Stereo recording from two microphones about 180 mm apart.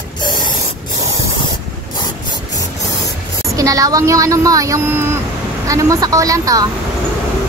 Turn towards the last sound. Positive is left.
turn(degrees=-20)  # may be behind; listen again after turning